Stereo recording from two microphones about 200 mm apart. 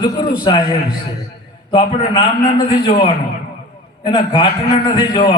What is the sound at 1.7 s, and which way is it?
A man's voice, 25° left (ahead or behind).